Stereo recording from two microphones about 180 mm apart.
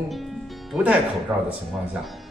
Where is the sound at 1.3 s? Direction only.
15° right (ahead or behind).